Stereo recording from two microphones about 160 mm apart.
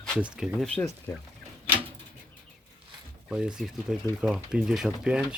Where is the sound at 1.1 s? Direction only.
15° left (ahead or behind).